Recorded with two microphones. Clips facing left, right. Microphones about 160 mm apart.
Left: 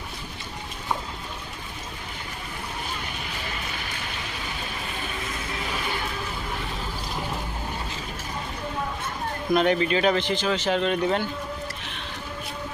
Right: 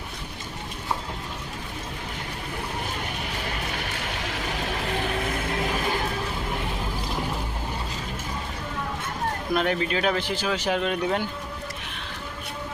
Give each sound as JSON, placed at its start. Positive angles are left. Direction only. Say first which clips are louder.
{"t": 4.4, "sound": "vehicle", "louder": "right 5 dB", "side_deg": -80}
{"t": 9.5, "sound": "speech", "louder": "left 5 dB", "side_deg": 0}